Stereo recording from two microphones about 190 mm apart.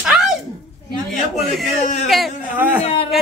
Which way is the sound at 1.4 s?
Centre (ahead or behind).